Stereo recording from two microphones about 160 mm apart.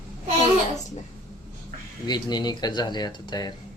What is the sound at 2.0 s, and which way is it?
Speech, 25° left (ahead or behind).